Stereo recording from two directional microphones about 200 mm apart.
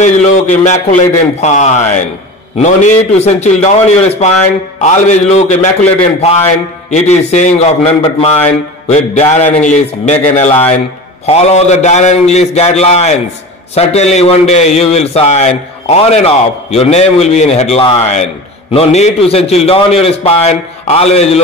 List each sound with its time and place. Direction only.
0.0 s a man's voice: 35° left (ahead or behind)
6.9 s a man's voice: 35° left (ahead or behind)